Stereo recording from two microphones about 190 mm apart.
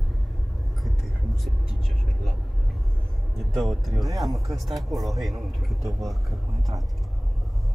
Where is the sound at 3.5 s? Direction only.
Centre (ahead or behind).